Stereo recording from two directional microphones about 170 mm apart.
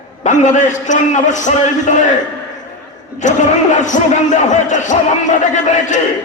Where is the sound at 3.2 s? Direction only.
45° left (ahead or behind).